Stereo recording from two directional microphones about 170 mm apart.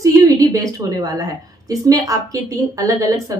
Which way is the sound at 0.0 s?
20° right (ahead or behind).